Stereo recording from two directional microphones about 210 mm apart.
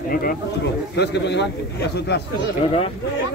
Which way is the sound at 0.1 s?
45° left (ahead or behind).